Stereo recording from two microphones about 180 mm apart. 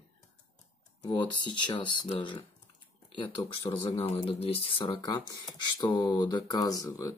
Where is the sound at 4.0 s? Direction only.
35° left (ahead or behind).